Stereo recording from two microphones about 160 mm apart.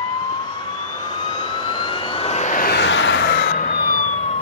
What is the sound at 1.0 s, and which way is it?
Vehicle, 30° left (ahead or behind).